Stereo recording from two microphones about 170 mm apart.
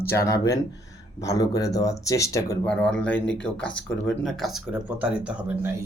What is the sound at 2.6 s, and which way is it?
Speech, 5° left (ahead or behind).